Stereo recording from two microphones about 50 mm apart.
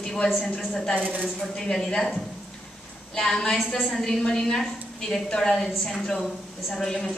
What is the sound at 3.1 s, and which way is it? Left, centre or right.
A woman's voice, centre.